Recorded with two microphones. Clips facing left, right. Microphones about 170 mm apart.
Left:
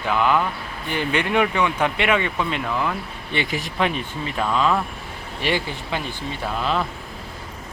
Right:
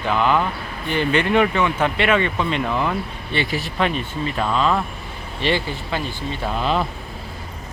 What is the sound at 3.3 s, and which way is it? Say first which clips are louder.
Speech: right 1 dB; 15° left (ahead or behind).